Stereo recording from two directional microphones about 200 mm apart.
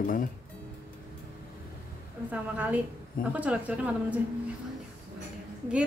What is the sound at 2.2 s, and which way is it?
A woman's voice, 5° right (ahead or behind).